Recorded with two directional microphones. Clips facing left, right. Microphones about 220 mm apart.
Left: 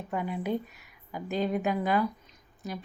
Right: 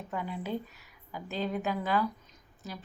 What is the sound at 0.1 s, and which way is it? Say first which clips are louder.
A woman's voice: left 4 dB; 10° left (ahead or behind).